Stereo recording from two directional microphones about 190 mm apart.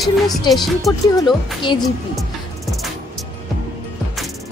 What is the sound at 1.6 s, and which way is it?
Speech, 25° left (ahead or behind).